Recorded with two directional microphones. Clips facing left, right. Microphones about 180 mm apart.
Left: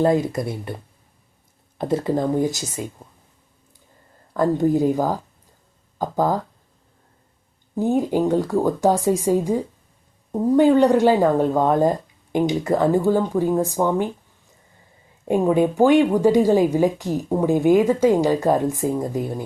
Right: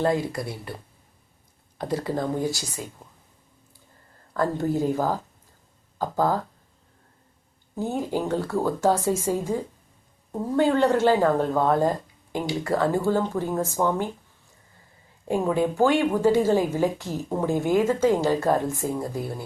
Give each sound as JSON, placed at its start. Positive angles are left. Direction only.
{"t": 0.0, "sound": "speech", "side_deg": 20}
{"t": 1.8, "sound": "speech", "side_deg": 25}
{"t": 4.4, "sound": "speech", "side_deg": 15}
{"t": 7.8, "sound": "speech", "side_deg": 15}
{"t": 15.3, "sound": "speech", "side_deg": 15}